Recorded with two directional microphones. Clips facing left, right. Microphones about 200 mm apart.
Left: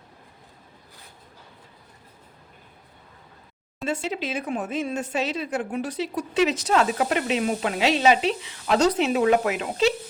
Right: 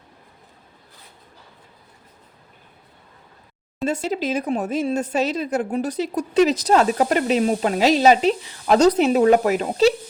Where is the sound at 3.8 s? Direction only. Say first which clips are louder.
Right 5 dB; 40° right (ahead or behind).